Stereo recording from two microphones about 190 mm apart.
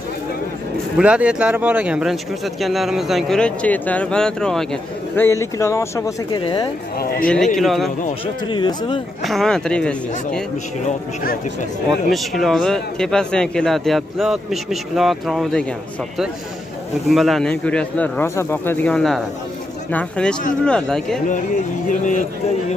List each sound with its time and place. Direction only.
0.9 s speech: 5° right (ahead or behind); by 6.7 s 25° left (ahead or behind)
7.5 s speech: centre (ahead or behind)
8.1 s speech: 25° left (ahead or behind)
9.2 s speech: centre (ahead or behind)
10.8 s speech: 40° left (ahead or behind)
11.9 s speech: centre (ahead or behind)
17.1 s speech: centre (ahead or behind)
21.3 s speech: 40° left (ahead or behind)